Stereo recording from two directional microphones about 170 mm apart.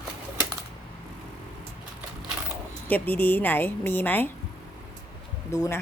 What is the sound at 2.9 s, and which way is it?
A woman's voice, 10° left (ahead or behind).